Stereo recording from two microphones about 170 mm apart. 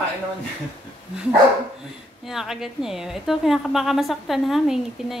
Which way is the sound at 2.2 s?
Centre (ahead or behind).